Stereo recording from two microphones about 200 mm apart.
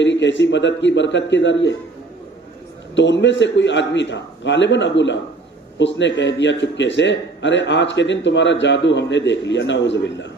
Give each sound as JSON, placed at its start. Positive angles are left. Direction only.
{"t": 0.0, "sound": "a man's voice", "side_deg": 65}
{"t": 2.9, "sound": "a man's voice", "side_deg": 65}